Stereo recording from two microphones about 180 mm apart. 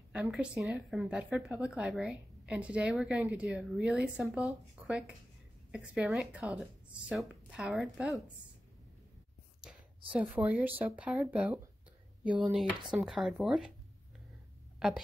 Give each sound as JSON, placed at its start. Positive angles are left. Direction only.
{"t": 0.1, "sound": "a woman's voice", "side_deg": -5}
{"t": 9.6, "sound": "a woman's voice", "side_deg": -5}
{"t": 14.8, "sound": "a woman's voice", "side_deg": -5}